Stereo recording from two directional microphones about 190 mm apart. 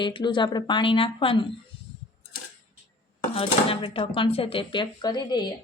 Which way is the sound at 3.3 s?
30° left (ahead or behind).